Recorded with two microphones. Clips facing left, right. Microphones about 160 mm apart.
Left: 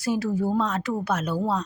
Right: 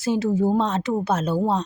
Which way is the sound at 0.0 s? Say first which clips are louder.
Right 4 dB; 25° right (ahead or behind).